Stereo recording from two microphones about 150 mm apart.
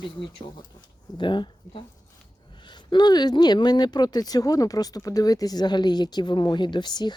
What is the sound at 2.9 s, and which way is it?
Speech, 30° left (ahead or behind).